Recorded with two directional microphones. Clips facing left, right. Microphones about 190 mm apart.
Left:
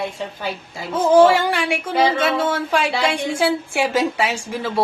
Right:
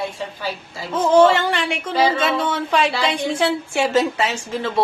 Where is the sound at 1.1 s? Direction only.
10° left (ahead or behind).